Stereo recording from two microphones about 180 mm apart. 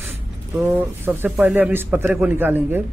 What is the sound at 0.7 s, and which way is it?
Speech, 10° right (ahead or behind).